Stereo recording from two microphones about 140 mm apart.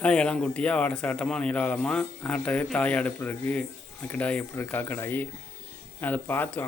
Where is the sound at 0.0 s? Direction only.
5° left (ahead or behind).